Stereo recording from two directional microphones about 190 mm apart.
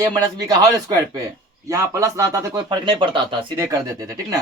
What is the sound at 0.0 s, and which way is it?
A man's voice, 20° right (ahead or behind).